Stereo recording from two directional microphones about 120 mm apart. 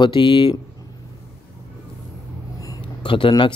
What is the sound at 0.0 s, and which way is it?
Speech, 40° left (ahead or behind).